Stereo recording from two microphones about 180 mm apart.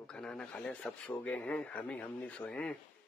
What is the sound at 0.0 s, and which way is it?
Speech, 5° left (ahead or behind).